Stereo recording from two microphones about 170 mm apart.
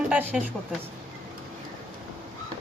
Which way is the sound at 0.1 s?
10° right (ahead or behind).